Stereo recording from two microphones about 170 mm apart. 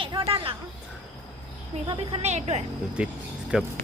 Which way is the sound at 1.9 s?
35° right (ahead or behind).